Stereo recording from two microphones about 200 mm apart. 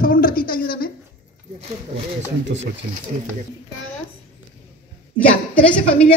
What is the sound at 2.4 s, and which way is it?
Speech, 65° right (ahead or behind).